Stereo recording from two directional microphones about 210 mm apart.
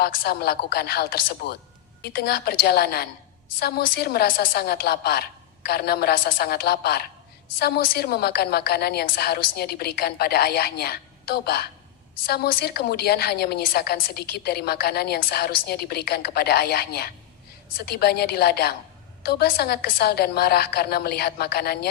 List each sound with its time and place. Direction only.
0.0 s a woman's voice: 50° left (ahead or behind)